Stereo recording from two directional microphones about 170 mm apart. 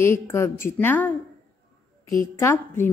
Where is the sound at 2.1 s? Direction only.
15° left (ahead or behind).